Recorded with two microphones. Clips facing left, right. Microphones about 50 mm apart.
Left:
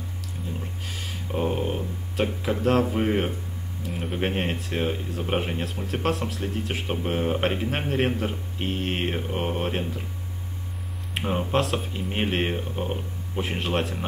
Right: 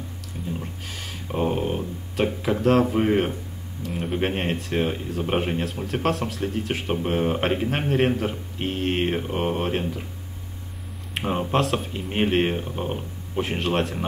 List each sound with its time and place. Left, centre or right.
0.5 s speech: centre
11.1 s speech: centre